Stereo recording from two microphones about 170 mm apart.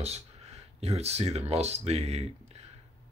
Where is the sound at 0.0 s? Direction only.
40° right (ahead or behind).